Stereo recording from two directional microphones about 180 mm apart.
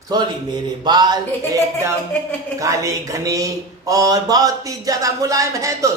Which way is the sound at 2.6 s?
20° right (ahead or behind).